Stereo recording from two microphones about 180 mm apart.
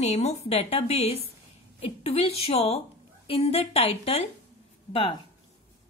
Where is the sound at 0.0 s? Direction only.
35° left (ahead or behind).